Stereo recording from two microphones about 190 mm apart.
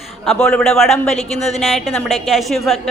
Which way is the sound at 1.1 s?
35° left (ahead or behind).